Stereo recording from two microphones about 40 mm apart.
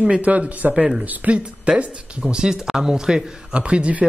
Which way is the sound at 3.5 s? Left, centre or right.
Right.